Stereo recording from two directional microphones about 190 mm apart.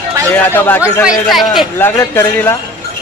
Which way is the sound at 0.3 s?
10° left (ahead or behind).